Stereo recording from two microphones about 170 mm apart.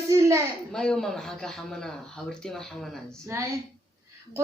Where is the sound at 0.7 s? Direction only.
5° left (ahead or behind).